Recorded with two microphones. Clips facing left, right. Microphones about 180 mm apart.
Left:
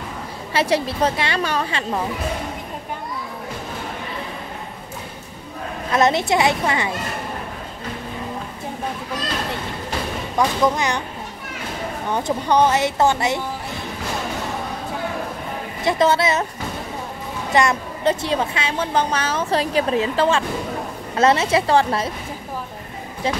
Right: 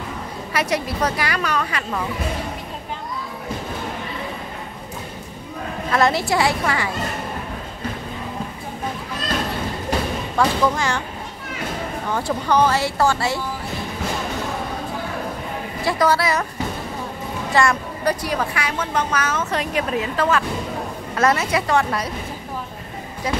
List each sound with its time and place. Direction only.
0.5 s a woman's voice: 30° left (ahead or behind)
5.9 s a woman's voice: 20° left (ahead or behind)
10.3 s speech: 15° left (ahead or behind)
12.1 s a woman's voice: 20° left (ahead or behind)
15.8 s a woman's voice: 20° left (ahead or behind)
17.6 s a woman's voice: 20° left (ahead or behind)